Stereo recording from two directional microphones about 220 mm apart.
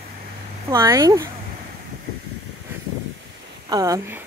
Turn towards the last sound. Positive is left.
turn(degrees=-15)  # may be behind; listen again after turning